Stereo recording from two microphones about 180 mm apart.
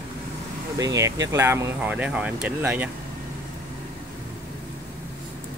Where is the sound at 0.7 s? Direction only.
20° right (ahead or behind).